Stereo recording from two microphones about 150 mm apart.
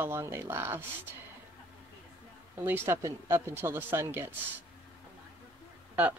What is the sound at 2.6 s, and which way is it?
A woman's voice, 15° right (ahead or behind).